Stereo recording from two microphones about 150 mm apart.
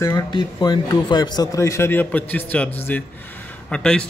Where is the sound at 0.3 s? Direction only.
30° left (ahead or behind).